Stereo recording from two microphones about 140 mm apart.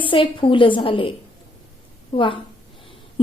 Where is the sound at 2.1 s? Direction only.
40° left (ahead or behind).